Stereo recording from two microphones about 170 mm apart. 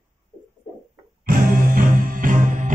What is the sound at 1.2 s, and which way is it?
Music, 55° right (ahead or behind).